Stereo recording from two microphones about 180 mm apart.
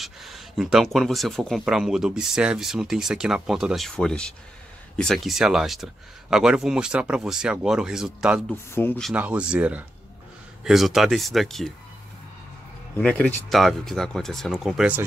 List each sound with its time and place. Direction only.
0.0 s speech: centre (ahead or behind)
8.7 s speech: 10° left (ahead or behind)
9.1 s speech: 10° right (ahead or behind)
12.9 s speech: 10° left (ahead or behind)